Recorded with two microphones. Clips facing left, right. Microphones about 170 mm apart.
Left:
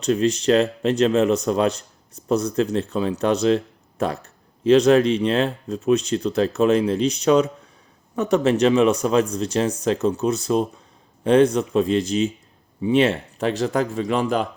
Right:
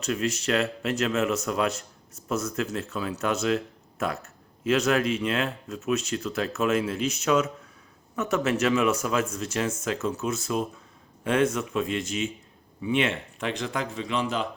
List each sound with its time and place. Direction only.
0.0 s a man's voice: 30° left (ahead or behind); by 14.4 s 50° left (ahead or behind)